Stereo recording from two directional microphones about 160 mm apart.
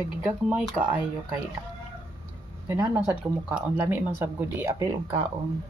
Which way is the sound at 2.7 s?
15° right (ahead or behind).